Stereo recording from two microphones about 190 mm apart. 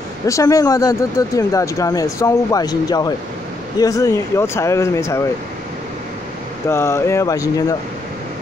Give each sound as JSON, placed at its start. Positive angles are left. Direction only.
{"t": 0.3, "sound": "speech", "side_deg": 15}
{"t": 6.7, "sound": "speech", "side_deg": 15}